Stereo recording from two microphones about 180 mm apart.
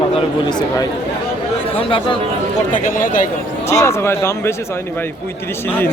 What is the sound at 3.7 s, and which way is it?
Speech, 15° left (ahead or behind).